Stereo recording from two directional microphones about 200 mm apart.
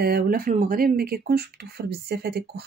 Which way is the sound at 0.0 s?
50° right (ahead or behind).